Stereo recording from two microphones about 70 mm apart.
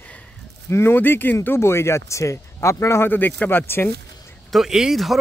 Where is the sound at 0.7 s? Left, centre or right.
Left.